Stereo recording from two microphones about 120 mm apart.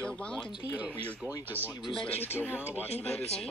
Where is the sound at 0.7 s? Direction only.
10° right (ahead or behind).